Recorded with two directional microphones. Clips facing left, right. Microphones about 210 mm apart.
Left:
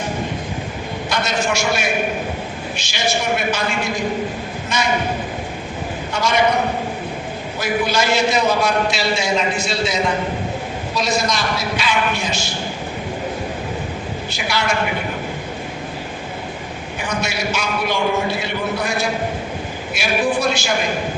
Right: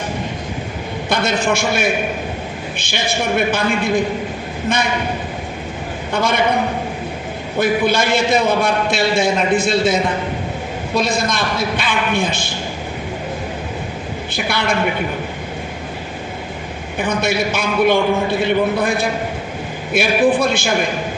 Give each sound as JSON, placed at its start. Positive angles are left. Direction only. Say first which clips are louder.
{"t": 1.1, "sound": "a man's voice", "louder": "right 4 dB", "side_deg": -55}
{"t": 6.1, "sound": "a man's voice", "louder": "right 1 dB", "side_deg": -55}
{"t": 7.6, "sound": "a man's voice", "louder": "right 4 dB", "side_deg": -55}
{"t": 14.3, "sound": "a man's voice", "louder": "right 2 dB", "side_deg": -55}
{"t": 17.1, "sound": "a man's voice", "louder": "right 5 dB", "side_deg": -55}